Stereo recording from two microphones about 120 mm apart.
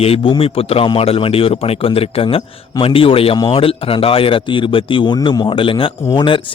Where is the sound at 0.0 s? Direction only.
50° left (ahead or behind).